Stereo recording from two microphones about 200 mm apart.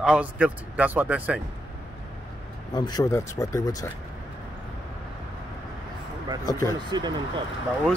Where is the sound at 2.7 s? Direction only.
20° left (ahead or behind).